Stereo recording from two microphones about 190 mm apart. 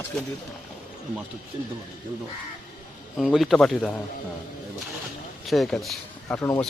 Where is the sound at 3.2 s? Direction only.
Centre (ahead or behind).